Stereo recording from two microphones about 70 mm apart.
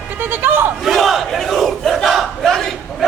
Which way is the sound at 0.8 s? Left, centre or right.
Centre.